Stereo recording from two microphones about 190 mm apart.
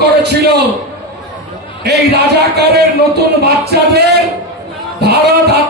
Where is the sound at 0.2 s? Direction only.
60° right (ahead or behind).